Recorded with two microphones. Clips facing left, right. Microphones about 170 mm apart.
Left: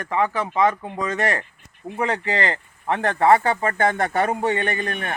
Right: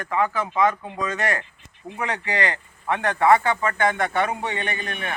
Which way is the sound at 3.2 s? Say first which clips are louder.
Left 1 dB; 40° left (ahead or behind).